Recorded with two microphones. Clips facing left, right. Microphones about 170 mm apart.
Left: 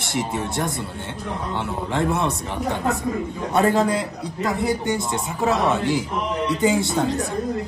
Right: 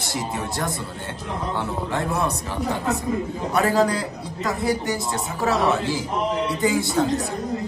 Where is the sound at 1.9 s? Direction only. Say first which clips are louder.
Left 3 dB; 20° left (ahead or behind).